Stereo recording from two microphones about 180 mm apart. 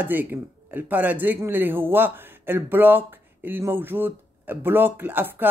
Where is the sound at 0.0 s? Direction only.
10° right (ahead or behind).